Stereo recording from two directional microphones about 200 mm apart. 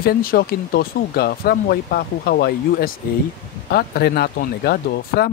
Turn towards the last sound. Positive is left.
turn(degrees=50)  # may be behind; listen again after turning